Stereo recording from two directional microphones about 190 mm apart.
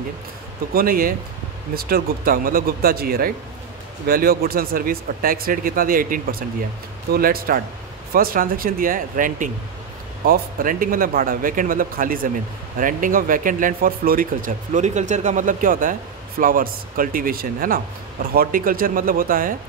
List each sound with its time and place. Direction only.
0.7 s speech: 50° right (ahead or behind)